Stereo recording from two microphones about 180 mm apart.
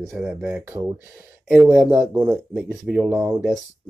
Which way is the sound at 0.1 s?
5° right (ahead or behind).